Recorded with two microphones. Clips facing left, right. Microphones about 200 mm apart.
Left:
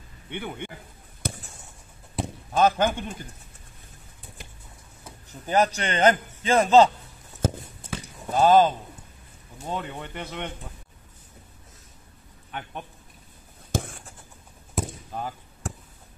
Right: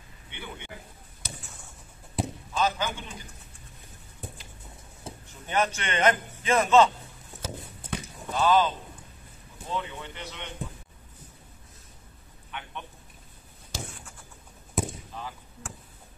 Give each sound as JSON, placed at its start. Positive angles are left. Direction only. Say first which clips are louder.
{"t": 0.3, "sound": "speech", "louder": "left 8 dB", "side_deg": 55}
{"t": 1.2, "sound": "a sound", "louder": "left 10 dB", "side_deg": 55}
{"t": 2.5, "sound": "speech", "louder": "left 7 dB", "side_deg": 55}
{"t": 5.1, "sound": "a sound", "louder": "right 5 dB", "side_deg": -25}
{"t": 5.5, "sound": "a man's voice", "louder": "left 5 dB", "side_deg": 35}
{"t": 7.4, "sound": "a sound", "louder": "left 10 dB", "side_deg": 50}
{"t": 8.3, "sound": "speech", "louder": "left 5 dB", "side_deg": 45}
{"t": 12.4, "sound": "a man's voice", "louder": "left 4 dB", "side_deg": 40}
{"t": 13.7, "sound": "writing", "louder": "left 9 dB", "side_deg": 50}
{"t": 14.8, "sound": "basketball bounce", "louder": "even", "side_deg": 0}
{"t": 15.1, "sound": "basketball bounce", "louder": "left 6 dB", "side_deg": 45}